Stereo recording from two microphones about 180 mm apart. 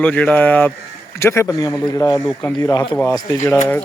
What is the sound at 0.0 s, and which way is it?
Speech, 10° left (ahead or behind).